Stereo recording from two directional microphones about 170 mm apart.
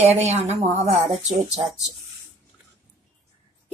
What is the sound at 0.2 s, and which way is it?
A woman's voice, 40° right (ahead or behind).